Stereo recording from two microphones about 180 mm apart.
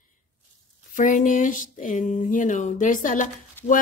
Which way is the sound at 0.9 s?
45° left (ahead or behind).